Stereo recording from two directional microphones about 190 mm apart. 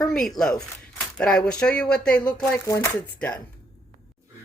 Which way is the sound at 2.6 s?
15° left (ahead or behind).